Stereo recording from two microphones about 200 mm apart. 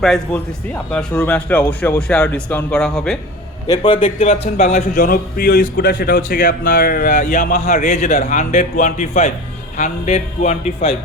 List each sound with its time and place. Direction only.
0.7 s speech: 5° left (ahead or behind)
3.7 s a man's voice: 25° left (ahead or behind)